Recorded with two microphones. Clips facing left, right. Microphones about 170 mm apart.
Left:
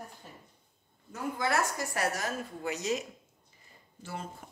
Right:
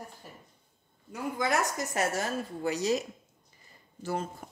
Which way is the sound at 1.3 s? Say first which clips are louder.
Right 2 dB; 15° right (ahead or behind).